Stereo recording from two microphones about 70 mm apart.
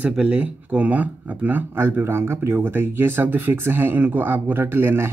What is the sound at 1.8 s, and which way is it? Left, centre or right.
Speech, right.